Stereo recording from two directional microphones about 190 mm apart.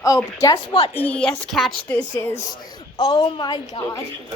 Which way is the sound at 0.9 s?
10° left (ahead or behind).